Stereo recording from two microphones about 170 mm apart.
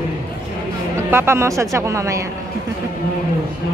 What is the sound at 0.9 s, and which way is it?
Speech, 15° right (ahead or behind).